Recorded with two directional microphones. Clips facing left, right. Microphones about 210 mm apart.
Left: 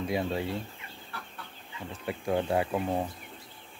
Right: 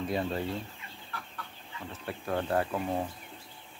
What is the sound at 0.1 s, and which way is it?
Speech, 10° left (ahead or behind).